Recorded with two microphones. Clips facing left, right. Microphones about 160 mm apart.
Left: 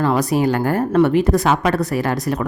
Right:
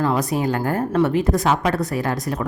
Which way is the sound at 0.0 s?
70° left (ahead or behind).